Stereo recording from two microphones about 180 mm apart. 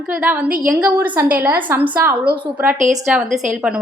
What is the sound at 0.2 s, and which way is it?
A woman's voice, 5° right (ahead or behind).